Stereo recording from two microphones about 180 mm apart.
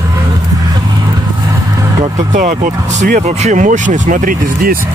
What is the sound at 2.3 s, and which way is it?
Speech, 45° right (ahead or behind).